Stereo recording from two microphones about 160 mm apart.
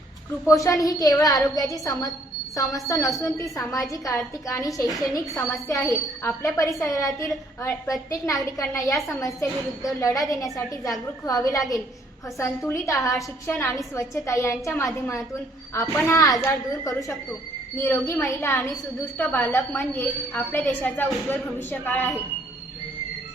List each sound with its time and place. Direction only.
0.4 s a woman's voice: 20° left (ahead or behind)
12.4 s a woman's voice: 20° left (ahead or behind)